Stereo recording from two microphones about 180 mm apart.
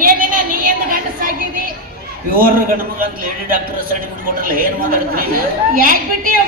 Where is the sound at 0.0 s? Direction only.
50° right (ahead or behind).